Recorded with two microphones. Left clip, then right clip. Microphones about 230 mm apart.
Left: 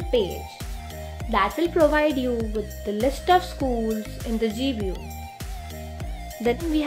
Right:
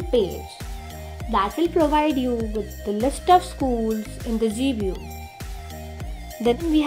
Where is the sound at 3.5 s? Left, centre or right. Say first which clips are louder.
Right 2 dB; centre.